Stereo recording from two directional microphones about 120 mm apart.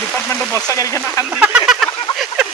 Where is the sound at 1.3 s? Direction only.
10° right (ahead or behind).